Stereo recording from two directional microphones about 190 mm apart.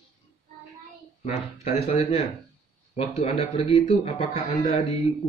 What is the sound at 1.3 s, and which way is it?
Speech, 30° left (ahead or behind).